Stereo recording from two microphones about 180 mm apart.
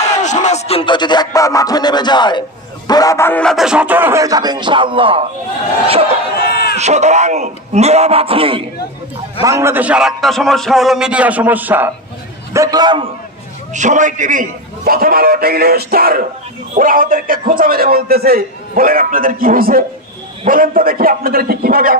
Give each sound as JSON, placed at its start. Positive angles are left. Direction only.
{"t": 0.0, "sound": "a man's voice", "side_deg": 40}
{"t": 6.4, "sound": "a sound", "side_deg": 60}
{"t": 6.8, "sound": "speech", "side_deg": -40}
{"t": 9.4, "sound": "a man's voice", "side_deg": -15}
{"t": 12.5, "sound": "a man's voice", "side_deg": -25}
{"t": 13.7, "sound": "a man's voice", "side_deg": -45}